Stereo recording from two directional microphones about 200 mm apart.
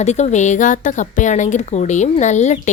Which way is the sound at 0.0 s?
35° left (ahead or behind).